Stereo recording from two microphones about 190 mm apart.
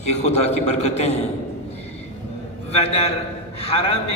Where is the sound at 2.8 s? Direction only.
30° left (ahead or behind).